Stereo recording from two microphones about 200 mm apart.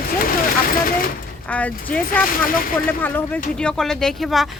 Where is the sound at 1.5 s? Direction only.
5° left (ahead or behind).